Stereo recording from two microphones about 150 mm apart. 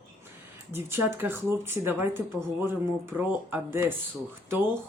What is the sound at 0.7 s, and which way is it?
A woman's voice, 15° right (ahead or behind).